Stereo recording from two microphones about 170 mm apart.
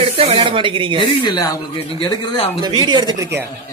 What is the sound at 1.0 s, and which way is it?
Speech, 25° left (ahead or behind).